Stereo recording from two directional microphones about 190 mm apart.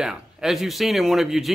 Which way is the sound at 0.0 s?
5° right (ahead or behind).